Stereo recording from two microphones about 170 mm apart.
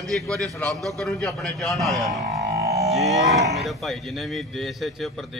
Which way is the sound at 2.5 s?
70° right (ahead or behind).